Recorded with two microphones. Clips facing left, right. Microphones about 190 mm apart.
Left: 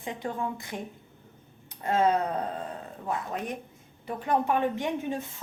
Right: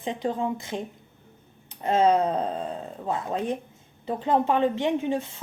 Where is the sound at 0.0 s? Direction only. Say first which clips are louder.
Right 5 dB; 20° right (ahead or behind).